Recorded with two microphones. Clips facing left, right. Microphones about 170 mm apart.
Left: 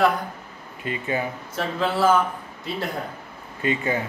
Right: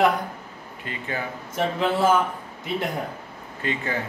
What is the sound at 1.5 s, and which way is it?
Speech, 20° right (ahead or behind).